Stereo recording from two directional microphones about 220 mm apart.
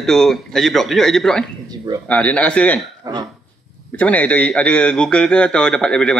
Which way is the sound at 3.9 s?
5° left (ahead or behind).